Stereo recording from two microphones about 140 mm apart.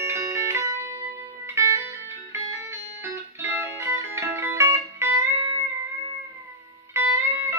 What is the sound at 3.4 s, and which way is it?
Music, 20° right (ahead or behind).